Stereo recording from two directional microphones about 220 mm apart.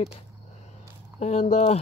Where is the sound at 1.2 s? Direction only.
30° left (ahead or behind).